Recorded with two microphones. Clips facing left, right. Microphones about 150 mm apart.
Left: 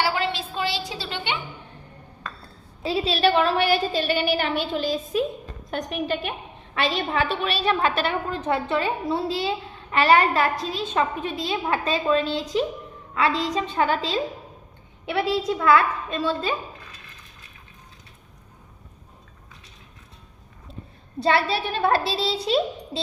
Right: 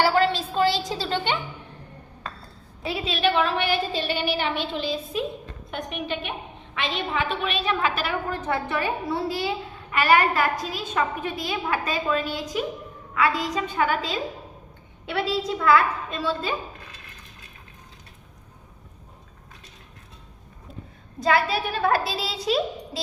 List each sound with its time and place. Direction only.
0.0 s a sound: 40° right (ahead or behind)
2.8 s a woman's voice: 35° left (ahead or behind)
15.0 s a woman's voice: 15° left (ahead or behind)
21.2 s a woman's voice: 30° left (ahead or behind)